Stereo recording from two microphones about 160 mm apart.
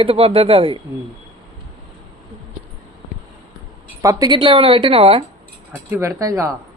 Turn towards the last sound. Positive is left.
turn(degrees=-20)  # may be behind; listen again after turning